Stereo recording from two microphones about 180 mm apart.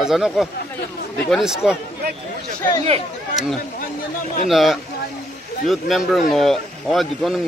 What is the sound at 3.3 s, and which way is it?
Speech, centre (ahead or behind).